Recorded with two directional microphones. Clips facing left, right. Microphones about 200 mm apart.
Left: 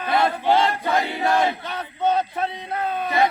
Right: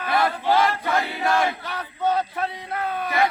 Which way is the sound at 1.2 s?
20° left (ahead or behind).